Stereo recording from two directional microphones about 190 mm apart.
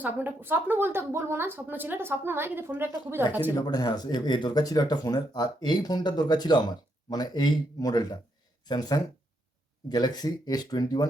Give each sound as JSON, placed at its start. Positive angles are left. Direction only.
{"t": 0.0, "sound": "a woman's voice", "side_deg": -10}
{"t": 3.5, "sound": "speech", "side_deg": 20}